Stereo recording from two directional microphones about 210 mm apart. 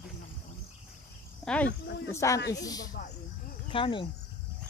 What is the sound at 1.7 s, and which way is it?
Speech, 55° left (ahead or behind).